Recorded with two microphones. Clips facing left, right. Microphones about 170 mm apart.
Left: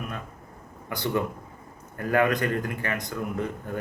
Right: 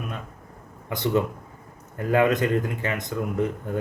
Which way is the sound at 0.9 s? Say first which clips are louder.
Right 4 dB; 20° right (ahead or behind).